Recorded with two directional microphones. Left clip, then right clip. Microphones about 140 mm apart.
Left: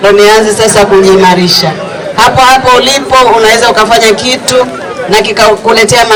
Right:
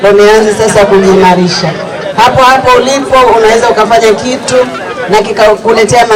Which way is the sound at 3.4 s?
20° left (ahead or behind).